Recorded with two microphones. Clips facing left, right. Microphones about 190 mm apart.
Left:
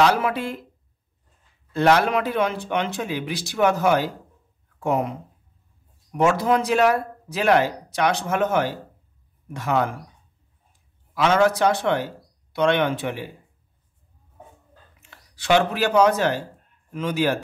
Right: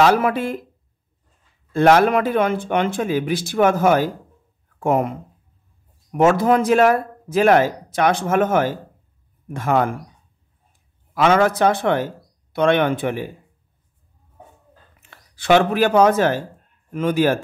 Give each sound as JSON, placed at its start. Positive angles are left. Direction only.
{"t": 0.0, "sound": "speech", "side_deg": -50}
{"t": 1.7, "sound": "speech", "side_deg": -50}
{"t": 6.1, "sound": "speech", "side_deg": -55}
{"t": 11.1, "sound": "speech", "side_deg": -55}
{"t": 15.0, "sound": "speech", "side_deg": -55}